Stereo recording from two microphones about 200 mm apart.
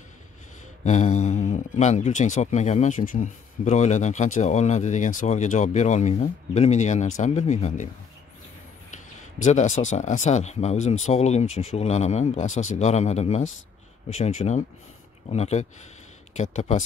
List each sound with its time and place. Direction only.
0.8 s speech: 35° left (ahead or behind)
9.4 s speech: 35° left (ahead or behind)